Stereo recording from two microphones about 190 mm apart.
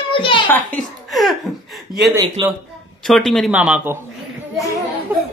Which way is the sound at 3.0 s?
Centre (ahead or behind).